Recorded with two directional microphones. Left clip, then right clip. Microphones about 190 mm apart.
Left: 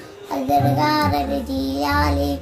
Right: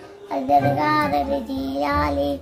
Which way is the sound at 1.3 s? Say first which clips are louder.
Left 1 dB; 30° right (ahead or behind).